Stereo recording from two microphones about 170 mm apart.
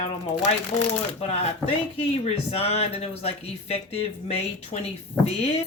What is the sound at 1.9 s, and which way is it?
Speech, 35° left (ahead or behind).